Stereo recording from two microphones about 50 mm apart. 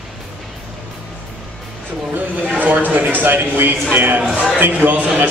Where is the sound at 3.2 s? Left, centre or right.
Right.